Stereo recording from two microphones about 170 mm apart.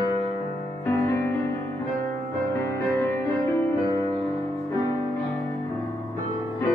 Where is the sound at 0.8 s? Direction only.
15° left (ahead or behind).